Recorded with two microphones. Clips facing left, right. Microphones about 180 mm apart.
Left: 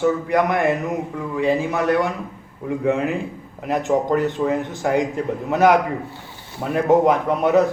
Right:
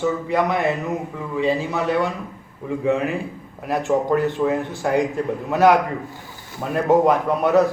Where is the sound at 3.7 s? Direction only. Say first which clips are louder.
Even; 20° left (ahead or behind).